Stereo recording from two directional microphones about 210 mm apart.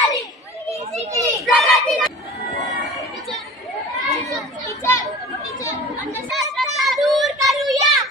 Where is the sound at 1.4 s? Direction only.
Centre (ahead or behind).